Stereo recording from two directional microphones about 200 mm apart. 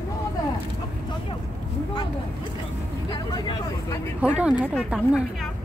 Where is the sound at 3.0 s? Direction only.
20° left (ahead or behind).